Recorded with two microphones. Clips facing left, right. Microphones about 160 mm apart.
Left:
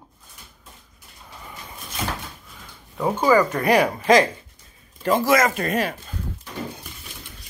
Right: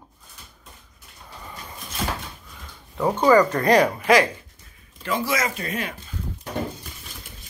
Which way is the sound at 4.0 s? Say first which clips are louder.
Left 2 dB; 25° left (ahead or behind).